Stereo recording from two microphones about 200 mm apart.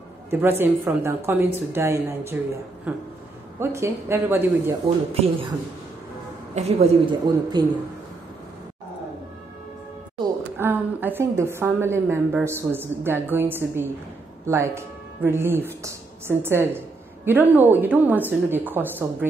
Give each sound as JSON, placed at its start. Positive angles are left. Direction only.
{"t": 0.3, "sound": "a woman's voice", "side_deg": -10}
{"t": 4.8, "sound": "speech", "side_deg": -30}
{"t": 6.5, "sound": "a woman's voice", "side_deg": -30}
{"t": 10.6, "sound": "a woman's voice", "side_deg": -10}